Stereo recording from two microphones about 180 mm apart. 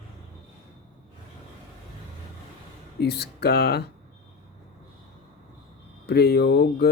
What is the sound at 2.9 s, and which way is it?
Speech, 65° left (ahead or behind).